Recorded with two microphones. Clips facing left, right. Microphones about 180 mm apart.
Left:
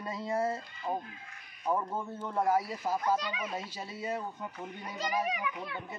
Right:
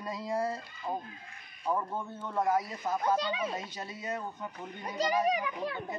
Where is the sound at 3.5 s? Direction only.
5° left (ahead or behind).